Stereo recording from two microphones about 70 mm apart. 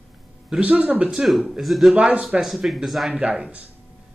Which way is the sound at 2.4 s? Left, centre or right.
Centre.